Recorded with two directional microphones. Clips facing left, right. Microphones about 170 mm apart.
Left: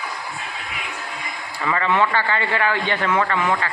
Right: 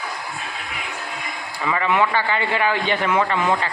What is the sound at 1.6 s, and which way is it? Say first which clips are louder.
A man's voice: even; 10° right (ahead or behind).